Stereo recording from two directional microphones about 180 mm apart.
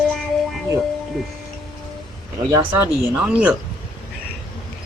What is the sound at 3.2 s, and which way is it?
Speech, 10° right (ahead or behind).